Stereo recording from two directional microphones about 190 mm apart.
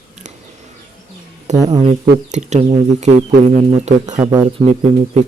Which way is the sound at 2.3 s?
40° right (ahead or behind).